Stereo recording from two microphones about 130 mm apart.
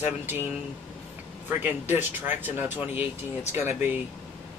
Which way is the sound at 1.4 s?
15° right (ahead or behind).